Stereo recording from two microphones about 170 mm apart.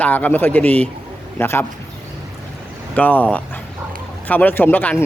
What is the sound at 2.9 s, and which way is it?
Speech, 10° left (ahead or behind).